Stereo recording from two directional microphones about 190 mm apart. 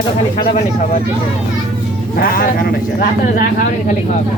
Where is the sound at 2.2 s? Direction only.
50° left (ahead or behind).